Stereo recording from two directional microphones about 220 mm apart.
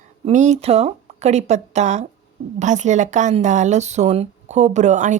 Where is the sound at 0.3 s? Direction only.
30° right (ahead or behind).